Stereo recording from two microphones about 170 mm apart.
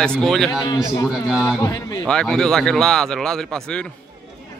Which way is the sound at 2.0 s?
5° left (ahead or behind).